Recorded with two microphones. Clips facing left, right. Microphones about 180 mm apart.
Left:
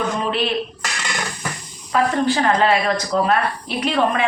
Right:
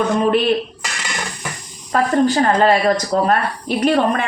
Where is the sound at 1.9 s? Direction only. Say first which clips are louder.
Right 3 dB; 40° right (ahead or behind).